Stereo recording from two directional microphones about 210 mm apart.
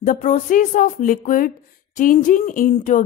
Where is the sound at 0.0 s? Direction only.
40° left (ahead or behind).